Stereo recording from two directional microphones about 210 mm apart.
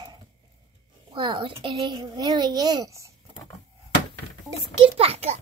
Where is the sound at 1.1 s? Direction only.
25° right (ahead or behind).